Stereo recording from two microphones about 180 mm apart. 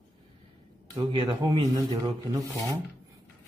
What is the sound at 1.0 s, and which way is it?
Speech, 30° right (ahead or behind).